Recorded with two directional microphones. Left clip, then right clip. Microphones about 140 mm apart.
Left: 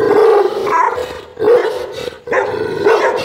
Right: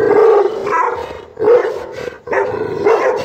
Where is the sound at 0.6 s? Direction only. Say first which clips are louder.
Left 2 dB; 35° left (ahead or behind).